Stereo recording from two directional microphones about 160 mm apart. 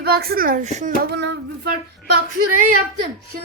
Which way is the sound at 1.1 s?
90° right.